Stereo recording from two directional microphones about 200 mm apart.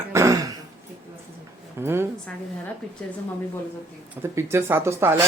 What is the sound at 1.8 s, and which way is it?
Speech, 10° right (ahead or behind).